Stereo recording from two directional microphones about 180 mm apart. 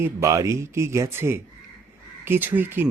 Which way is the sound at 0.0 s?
15° right (ahead or behind).